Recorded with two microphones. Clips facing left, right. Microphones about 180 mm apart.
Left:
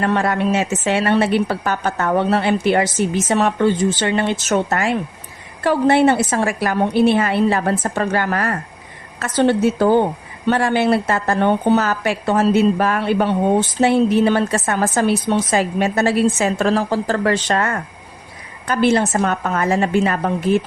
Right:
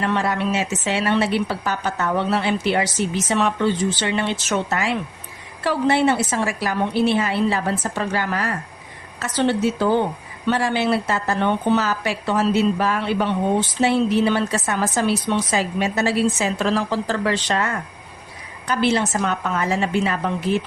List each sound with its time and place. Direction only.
0.0 s a woman's voice: 50° left (ahead or behind)